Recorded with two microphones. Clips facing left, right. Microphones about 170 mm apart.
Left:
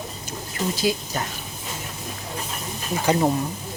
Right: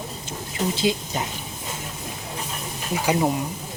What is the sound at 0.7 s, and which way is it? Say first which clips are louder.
Speech: even; 20° right (ahead or behind).